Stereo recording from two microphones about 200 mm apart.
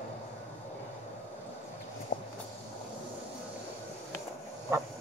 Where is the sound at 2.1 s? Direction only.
40° left (ahead or behind).